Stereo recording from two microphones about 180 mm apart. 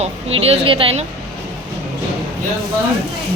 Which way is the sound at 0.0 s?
35° right (ahead or behind).